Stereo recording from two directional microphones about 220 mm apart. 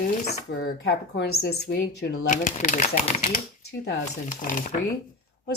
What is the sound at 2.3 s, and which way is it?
Speech, 35° left (ahead or behind).